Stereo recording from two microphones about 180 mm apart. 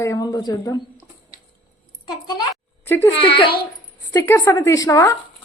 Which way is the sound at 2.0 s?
20° left (ahead or behind).